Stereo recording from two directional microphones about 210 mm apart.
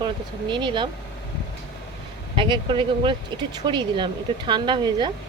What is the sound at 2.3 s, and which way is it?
Speech, 25° right (ahead or behind).